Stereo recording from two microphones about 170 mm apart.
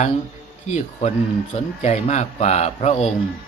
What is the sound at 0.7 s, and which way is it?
Speech, 40° left (ahead or behind).